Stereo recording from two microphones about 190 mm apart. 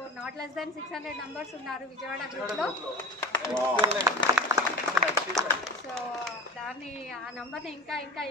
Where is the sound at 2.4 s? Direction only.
Centre (ahead or behind).